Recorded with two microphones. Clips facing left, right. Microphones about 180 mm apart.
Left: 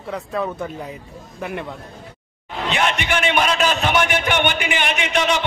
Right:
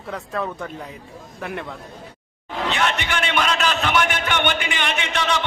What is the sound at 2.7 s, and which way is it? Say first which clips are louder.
A man's voice: left 3 dB; 15° left (ahead or behind).